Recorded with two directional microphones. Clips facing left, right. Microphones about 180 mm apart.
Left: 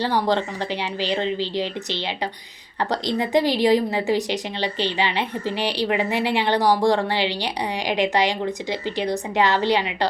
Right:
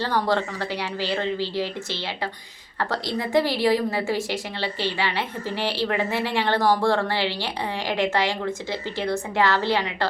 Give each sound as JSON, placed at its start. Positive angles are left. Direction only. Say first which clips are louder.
{"t": 0.0, "sound": "a woman's voice", "louder": "left 2 dB", "side_deg": 15}